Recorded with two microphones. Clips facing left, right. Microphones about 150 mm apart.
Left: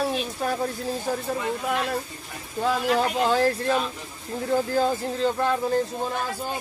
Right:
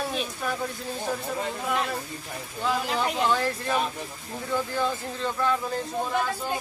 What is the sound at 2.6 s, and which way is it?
Speech, 40° left (ahead or behind).